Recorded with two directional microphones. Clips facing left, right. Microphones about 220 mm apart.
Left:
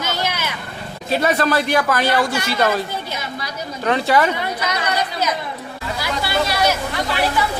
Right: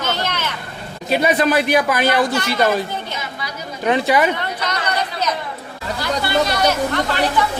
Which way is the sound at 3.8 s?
15° right (ahead or behind).